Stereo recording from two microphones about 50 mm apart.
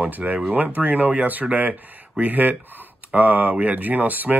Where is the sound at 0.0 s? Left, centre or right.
Right.